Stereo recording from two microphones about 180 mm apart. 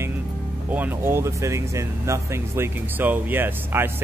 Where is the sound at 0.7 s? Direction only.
10° right (ahead or behind).